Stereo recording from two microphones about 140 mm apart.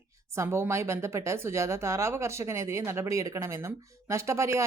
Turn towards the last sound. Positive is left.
turn(degrees=-20)  # may be behind; listen again after turning